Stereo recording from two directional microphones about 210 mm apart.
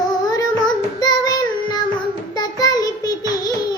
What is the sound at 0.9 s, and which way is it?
Child singing, 20° left (ahead or behind).